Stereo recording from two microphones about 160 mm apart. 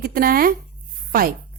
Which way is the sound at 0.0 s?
65° right (ahead or behind).